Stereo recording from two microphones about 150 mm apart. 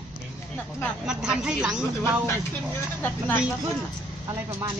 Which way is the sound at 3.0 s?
15° left (ahead or behind).